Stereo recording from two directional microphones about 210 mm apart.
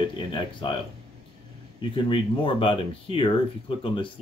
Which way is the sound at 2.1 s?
25° left (ahead or behind).